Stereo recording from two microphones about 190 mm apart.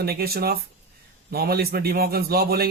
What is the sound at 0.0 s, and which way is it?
Speech, 55° right (ahead or behind).